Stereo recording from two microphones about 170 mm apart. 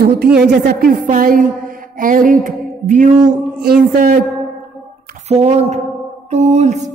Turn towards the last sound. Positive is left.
turn(degrees=-40)  # may be behind; listen again after turning